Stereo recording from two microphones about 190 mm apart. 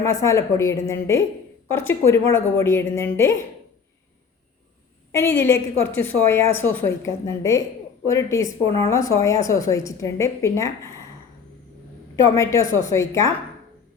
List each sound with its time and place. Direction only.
0.0 s a woman's voice: 15° left (ahead or behind)
5.1 s a woman's voice: 15° left (ahead or behind)
8.6 s speech: 30° right (ahead or behind)
8.9 s a woman's voice: 15° left (ahead or behind)
12.3 s a woman's voice: 15° left (ahead or behind)